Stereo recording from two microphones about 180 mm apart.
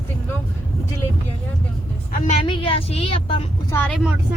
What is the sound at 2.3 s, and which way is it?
A woman's voice, 30° left (ahead or behind).